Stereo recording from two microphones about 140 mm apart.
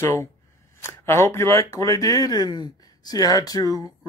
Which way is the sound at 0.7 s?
20° left (ahead or behind).